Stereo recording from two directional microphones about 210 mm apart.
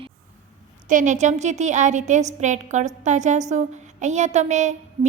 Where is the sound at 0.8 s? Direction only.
35° right (ahead or behind).